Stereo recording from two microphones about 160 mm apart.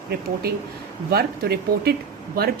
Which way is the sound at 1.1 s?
75° right (ahead or behind).